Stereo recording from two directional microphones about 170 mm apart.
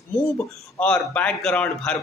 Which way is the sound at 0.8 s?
5° left (ahead or behind).